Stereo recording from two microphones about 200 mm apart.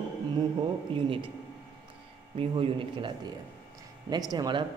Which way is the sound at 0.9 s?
25° right (ahead or behind).